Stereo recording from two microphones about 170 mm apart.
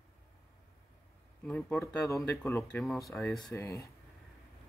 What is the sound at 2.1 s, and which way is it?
Speech, 15° left (ahead or behind).